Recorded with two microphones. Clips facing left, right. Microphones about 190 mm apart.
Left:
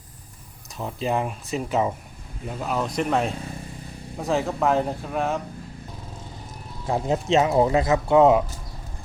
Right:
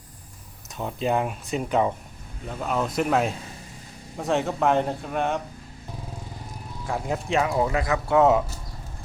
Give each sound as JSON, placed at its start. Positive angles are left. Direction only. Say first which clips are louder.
{"t": 0.8, "sound": "speech", "louder": "right 1 dB", "side_deg": 0}
{"t": 6.8, "sound": "speech", "louder": "left 5 dB", "side_deg": 25}